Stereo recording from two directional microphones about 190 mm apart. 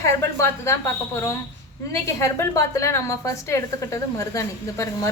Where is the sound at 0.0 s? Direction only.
15° left (ahead or behind).